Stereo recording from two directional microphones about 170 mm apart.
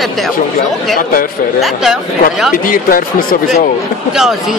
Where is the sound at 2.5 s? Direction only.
55° left (ahead or behind).